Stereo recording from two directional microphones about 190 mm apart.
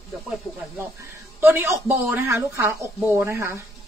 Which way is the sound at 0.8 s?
15° right (ahead or behind).